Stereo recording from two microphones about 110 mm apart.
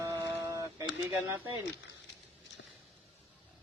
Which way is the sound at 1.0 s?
20° right (ahead or behind).